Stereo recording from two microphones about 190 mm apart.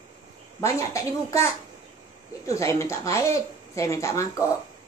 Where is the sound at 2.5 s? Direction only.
15° left (ahead or behind).